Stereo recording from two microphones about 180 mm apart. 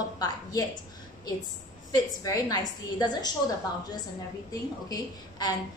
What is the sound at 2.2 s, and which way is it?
A woman's voice, 20° left (ahead or behind).